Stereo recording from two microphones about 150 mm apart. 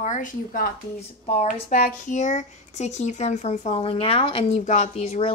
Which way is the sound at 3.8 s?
40° left (ahead or behind).